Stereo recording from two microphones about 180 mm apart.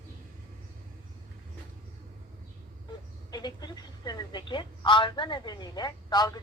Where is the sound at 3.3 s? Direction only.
25° left (ahead or behind).